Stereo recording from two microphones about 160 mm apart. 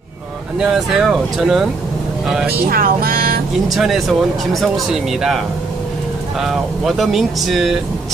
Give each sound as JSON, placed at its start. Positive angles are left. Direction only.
{"t": 0.6, "sound": "speech", "side_deg": 0}
{"t": 2.6, "sound": "music", "side_deg": -65}
{"t": 3.7, "sound": "speech", "side_deg": 0}
{"t": 6.4, "sound": "speech", "side_deg": 0}